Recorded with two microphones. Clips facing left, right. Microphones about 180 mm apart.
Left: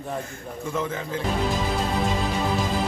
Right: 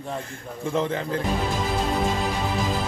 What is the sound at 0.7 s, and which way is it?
Speech, 30° right (ahead or behind).